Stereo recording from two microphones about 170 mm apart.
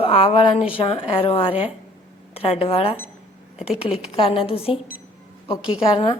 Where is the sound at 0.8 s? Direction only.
30° left (ahead or behind).